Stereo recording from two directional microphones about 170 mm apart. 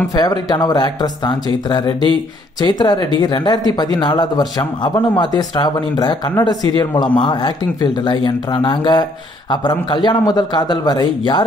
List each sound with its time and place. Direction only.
0.1 s speech: 25° left (ahead or behind)